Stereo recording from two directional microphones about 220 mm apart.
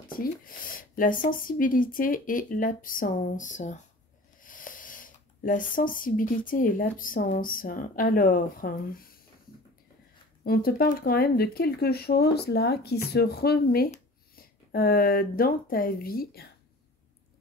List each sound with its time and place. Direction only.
0.1 s speech: 40° left (ahead or behind)
10.4 s speech: 45° left (ahead or behind)